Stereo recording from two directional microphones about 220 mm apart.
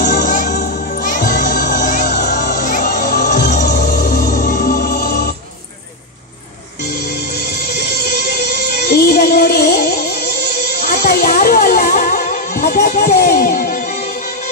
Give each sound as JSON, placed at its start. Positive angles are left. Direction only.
{"t": 0.0, "sound": "music", "side_deg": 40}
{"t": 7.3, "sound": "music", "side_deg": 45}